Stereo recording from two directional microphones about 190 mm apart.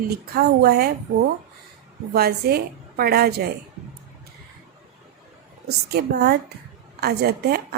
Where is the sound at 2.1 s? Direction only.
55° right (ahead or behind).